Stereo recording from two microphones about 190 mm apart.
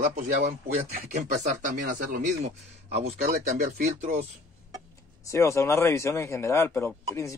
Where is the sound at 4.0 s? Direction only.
35° right (ahead or behind).